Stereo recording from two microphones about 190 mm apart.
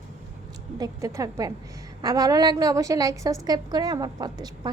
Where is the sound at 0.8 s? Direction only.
15° right (ahead or behind).